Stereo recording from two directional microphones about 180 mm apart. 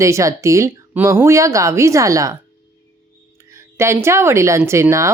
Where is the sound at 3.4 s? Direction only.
15° right (ahead or behind).